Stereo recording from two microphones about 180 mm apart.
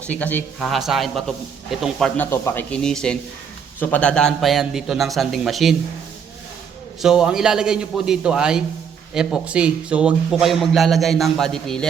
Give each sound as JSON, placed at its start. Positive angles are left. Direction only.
{"t": 0.1, "sound": "a man's voice", "side_deg": 10}
{"t": 7.0, "sound": "a man's voice", "side_deg": -5}